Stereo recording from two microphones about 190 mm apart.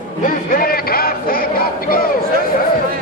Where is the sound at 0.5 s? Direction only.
50° left (ahead or behind).